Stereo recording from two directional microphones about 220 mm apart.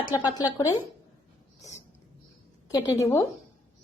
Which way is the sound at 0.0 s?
20° left (ahead or behind).